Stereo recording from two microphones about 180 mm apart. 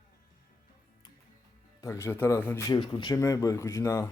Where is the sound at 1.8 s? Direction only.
15° left (ahead or behind).